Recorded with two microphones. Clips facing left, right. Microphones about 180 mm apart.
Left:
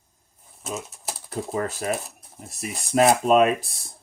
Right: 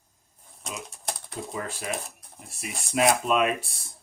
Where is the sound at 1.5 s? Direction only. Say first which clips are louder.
Left 7 dB; 45° left (ahead or behind).